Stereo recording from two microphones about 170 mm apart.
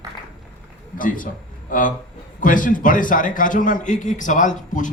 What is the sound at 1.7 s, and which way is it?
A man's voice, 50° left (ahead or behind).